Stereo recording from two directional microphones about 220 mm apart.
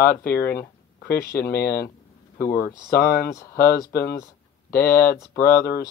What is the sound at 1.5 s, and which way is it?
Speech, 45° left (ahead or behind).